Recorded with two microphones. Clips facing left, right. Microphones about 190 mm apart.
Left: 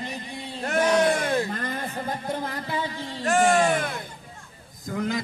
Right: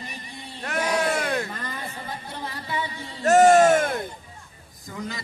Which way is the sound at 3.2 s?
40° right (ahead or behind).